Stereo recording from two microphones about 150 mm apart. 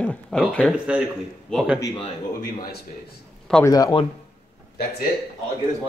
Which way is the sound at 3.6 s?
25° left (ahead or behind).